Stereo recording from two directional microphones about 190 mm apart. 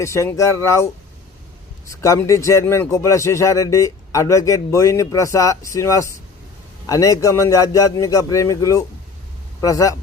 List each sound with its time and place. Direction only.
0.0 s a man's voice: 15° left (ahead or behind)
1.9 s a man's voice: 15° left (ahead or behind)